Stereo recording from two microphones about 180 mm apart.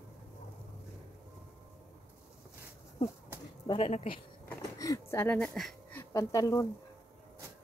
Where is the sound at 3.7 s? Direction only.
35° left (ahead or behind).